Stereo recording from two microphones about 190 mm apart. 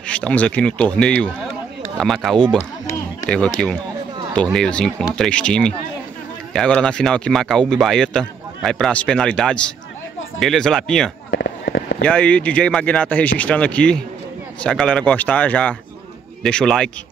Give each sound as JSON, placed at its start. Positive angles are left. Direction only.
{"t": 0.1, "sound": "a man's voice", "side_deg": 5}
{"t": 11.2, "sound": "fireworks", "side_deg": 60}
{"t": 12.0, "sound": "a man's voice", "side_deg": 5}